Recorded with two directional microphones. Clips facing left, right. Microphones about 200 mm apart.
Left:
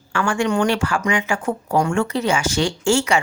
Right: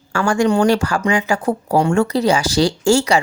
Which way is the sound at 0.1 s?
40° right (ahead or behind).